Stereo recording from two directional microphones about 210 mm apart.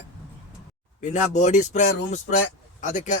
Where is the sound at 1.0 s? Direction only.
35° left (ahead or behind).